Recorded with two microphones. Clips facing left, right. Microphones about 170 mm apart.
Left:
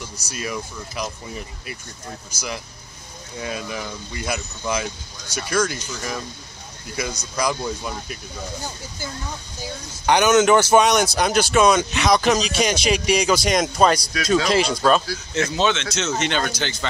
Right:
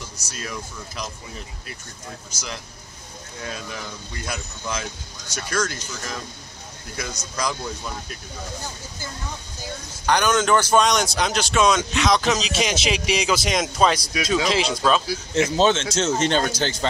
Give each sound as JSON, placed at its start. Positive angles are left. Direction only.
{"t": 0.3, "sound": "speech", "side_deg": 5}
{"t": 3.3, "sound": "speech", "side_deg": 5}
{"t": 7.3, "sound": "speech", "side_deg": 5}
{"t": 10.0, "sound": "speech", "side_deg": 10}
{"t": 15.0, "sound": "speech", "side_deg": -25}